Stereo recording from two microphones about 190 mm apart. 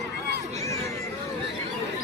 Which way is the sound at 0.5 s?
15° left (ahead or behind).